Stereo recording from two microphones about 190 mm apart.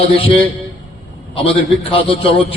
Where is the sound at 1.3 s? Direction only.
30° left (ahead or behind).